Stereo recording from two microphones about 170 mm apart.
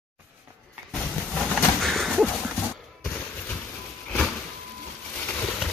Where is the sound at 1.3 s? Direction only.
Centre (ahead or behind).